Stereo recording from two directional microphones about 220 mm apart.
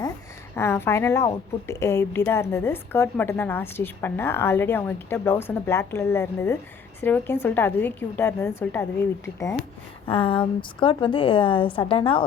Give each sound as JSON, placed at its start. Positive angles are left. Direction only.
{"t": 0.5, "sound": "a woman's voice", "side_deg": 10}
{"t": 10.1, "sound": "a woman's voice", "side_deg": 25}